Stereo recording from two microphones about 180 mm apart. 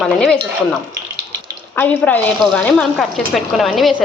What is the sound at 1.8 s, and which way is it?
A woman's voice, 10° left (ahead or behind).